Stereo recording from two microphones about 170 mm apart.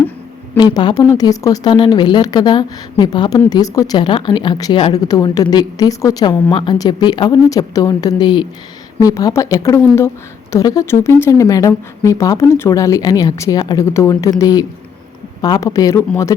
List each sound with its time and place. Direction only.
0.5 s a woman's voice: 25° left (ahead or behind)